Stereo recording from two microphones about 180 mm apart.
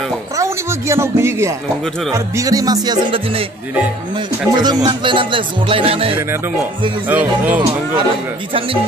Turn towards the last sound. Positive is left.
turn(degrees=-10)  # may be behind; listen again after turning